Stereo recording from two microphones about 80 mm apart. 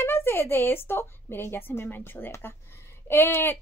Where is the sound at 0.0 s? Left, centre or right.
Left.